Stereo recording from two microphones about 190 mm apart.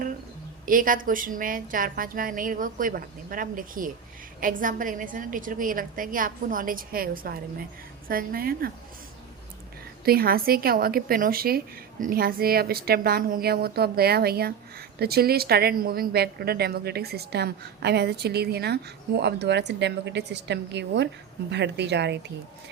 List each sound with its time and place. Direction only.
0.6 s a woman's voice: 45° right (ahead or behind)
10.1 s a woman's voice: 50° right (ahead or behind)